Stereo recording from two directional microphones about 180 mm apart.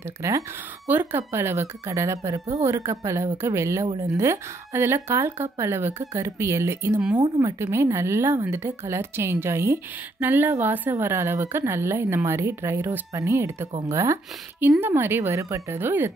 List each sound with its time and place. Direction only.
0.2 s a woman's voice: 15° right (ahead or behind)